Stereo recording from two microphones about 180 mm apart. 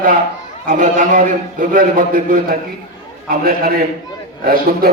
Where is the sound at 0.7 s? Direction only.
50° right (ahead or behind).